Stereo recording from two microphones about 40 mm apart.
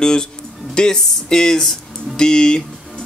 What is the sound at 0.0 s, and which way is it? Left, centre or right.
Speech, centre.